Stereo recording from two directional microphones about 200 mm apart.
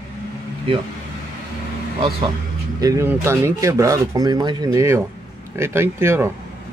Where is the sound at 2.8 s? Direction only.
15° right (ahead or behind).